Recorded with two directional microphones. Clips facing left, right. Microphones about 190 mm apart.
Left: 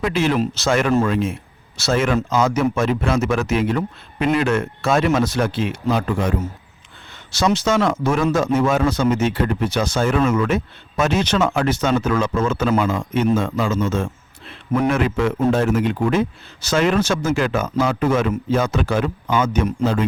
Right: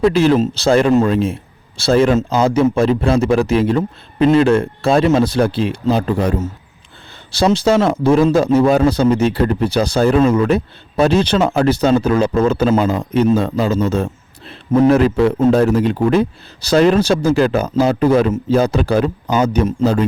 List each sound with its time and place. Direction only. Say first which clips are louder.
0.0 s a man's voice: right 7 dB; 35° right (ahead or behind)